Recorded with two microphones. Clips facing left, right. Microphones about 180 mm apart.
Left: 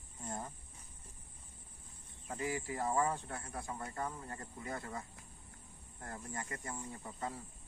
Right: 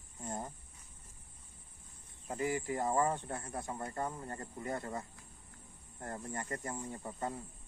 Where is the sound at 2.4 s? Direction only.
40° right (ahead or behind).